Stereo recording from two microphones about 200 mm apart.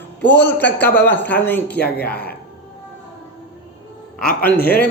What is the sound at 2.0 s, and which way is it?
Speech, 50° left (ahead or behind).